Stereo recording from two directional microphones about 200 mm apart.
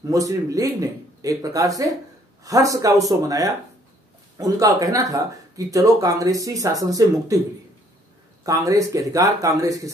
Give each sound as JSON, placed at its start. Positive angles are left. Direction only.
{"t": 0.1, "sound": "speech", "side_deg": -15}
{"t": 8.5, "sound": "speech", "side_deg": -15}